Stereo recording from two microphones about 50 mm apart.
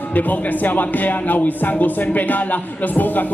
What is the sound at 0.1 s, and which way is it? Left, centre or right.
Speech, left.